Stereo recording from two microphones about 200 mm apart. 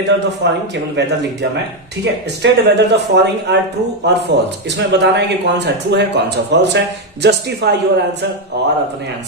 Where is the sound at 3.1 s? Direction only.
55° right (ahead or behind).